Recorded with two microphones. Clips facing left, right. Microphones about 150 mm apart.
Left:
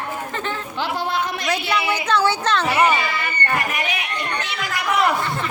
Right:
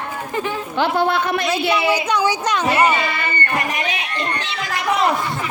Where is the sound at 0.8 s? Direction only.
60° right (ahead or behind).